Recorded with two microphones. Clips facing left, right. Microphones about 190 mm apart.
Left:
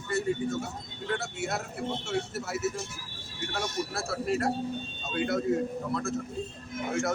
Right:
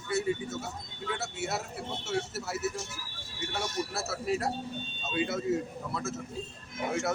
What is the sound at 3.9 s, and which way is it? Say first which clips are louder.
Speech: left 3 dB; 5° right (ahead or behind).